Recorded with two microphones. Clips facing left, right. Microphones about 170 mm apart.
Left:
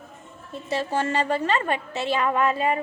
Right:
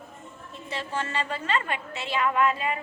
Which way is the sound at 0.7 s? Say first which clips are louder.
Left 7 dB; 40° left (ahead or behind).